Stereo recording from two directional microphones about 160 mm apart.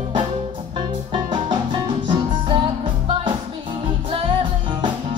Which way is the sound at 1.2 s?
30° right (ahead or behind).